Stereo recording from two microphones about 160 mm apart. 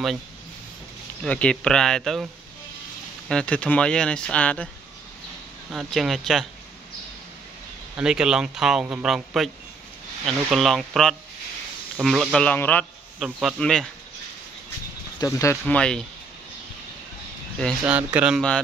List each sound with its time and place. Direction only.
1.2 s speech: 5° left (ahead or behind)
3.3 s speech: 5° left (ahead or behind)
5.7 s speech: centre (ahead or behind)
7.9 s speech: 5° right (ahead or behind)
13.2 s speech: centre (ahead or behind)
15.1 s speech: 20° left (ahead or behind)
15.7 s speech: 5° left (ahead or behind)
17.8 s speech: 10° right (ahead or behind)